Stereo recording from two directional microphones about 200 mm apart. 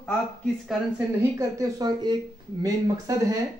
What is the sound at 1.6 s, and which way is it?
Speech, 20° right (ahead or behind).